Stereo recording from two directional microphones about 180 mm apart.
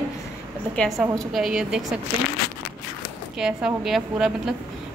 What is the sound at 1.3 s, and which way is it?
Speech, centre (ahead or behind).